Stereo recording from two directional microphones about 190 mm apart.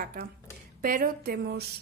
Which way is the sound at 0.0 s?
50° right (ahead or behind).